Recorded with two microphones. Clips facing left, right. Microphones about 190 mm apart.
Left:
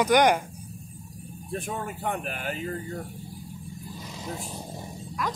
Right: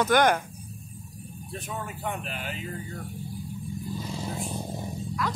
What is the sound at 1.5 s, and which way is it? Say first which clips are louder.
Speech: left 4 dB; 45° left (ahead or behind).